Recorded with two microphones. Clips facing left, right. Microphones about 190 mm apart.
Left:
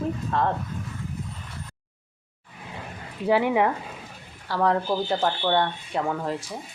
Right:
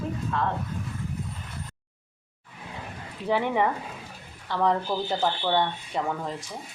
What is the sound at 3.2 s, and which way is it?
Speech, 10° left (ahead or behind).